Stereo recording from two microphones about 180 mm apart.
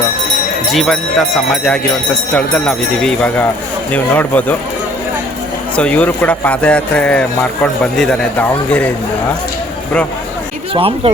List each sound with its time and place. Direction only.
0.7 s speech: centre (ahead or behind)
2.3 s speech: 5° left (ahead or behind)
5.7 s speech: 5° left (ahead or behind)
10.8 s speech: 30° right (ahead or behind)